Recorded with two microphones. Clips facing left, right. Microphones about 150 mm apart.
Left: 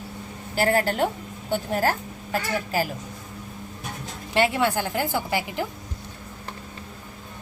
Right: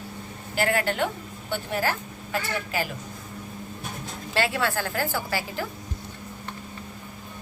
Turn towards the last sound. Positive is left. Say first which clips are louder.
# left 3 dB
turn(degrees=20)  # may be behind; listen again after turning